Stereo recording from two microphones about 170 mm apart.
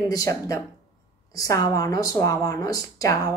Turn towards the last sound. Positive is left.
turn(degrees=20)  # may be behind; listen again after turning